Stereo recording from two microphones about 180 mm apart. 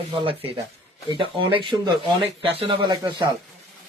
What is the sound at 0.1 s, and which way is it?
Speech, 30° right (ahead or behind).